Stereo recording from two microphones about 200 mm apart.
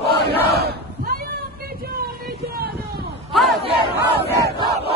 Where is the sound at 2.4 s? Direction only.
50° right (ahead or behind).